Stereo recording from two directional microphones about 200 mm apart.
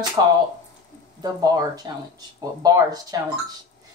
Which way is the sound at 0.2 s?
20° right (ahead or behind).